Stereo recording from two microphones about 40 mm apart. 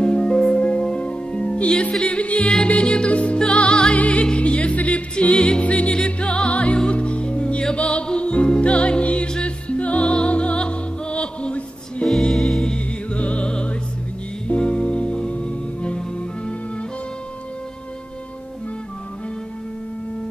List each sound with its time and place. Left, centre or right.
0.0 s music: left
12.2 s music: centre
12.6 s music: left